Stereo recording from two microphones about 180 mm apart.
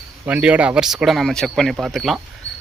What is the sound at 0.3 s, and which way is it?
A man's voice, 10° right (ahead or behind).